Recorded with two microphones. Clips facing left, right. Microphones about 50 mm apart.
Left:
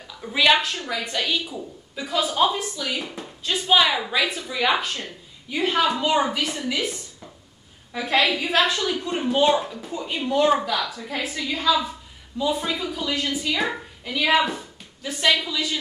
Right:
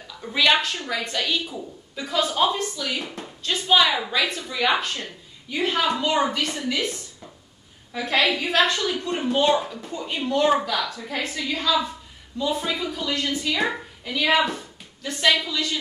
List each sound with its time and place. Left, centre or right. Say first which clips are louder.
0.2 s a woman's voice: left 1 dB; centre
3.6 s a woman's voice: even; centre